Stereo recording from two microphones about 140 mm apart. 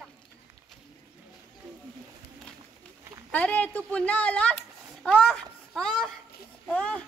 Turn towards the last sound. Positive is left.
turn(degrees=10)  # may be behind; listen again after turning